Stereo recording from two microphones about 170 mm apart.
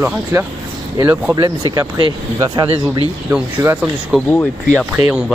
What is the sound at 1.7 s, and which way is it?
Speech, 25° right (ahead or behind).